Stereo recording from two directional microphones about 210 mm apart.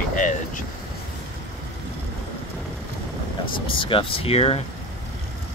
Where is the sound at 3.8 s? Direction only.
25° left (ahead or behind).